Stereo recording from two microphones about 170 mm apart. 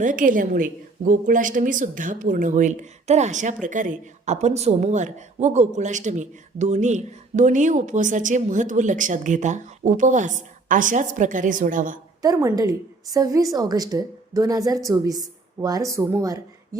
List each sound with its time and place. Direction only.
0.0 s a woman's voice: 50° right (ahead or behind)
12.2 s a woman's voice: 20° right (ahead or behind)